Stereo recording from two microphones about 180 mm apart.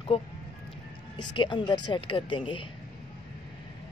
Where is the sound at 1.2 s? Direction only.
25° left (ahead or behind).